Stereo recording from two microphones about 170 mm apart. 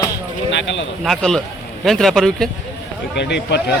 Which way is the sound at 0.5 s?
90° left.